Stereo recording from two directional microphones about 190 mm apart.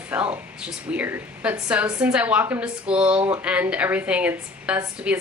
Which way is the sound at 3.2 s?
30° right (ahead or behind).